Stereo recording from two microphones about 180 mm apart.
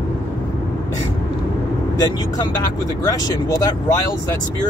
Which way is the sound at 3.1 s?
20° left (ahead or behind).